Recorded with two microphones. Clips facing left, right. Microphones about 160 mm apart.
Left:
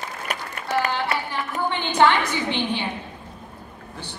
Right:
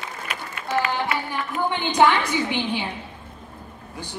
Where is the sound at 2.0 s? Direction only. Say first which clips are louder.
Even; 10° right (ahead or behind).